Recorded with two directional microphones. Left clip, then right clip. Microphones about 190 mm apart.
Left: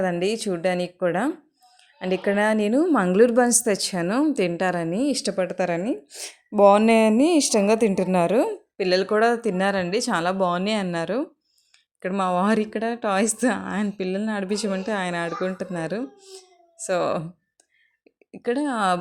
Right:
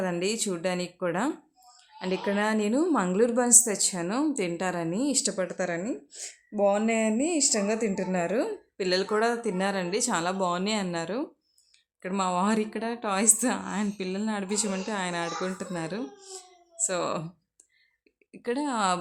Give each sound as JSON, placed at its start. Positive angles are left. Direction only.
{"t": 0.0, "sound": "a woman's voice", "side_deg": 20}
{"t": 8.4, "sound": "a woman's voice", "side_deg": 20}
{"t": 18.3, "sound": "a woman's voice", "side_deg": 20}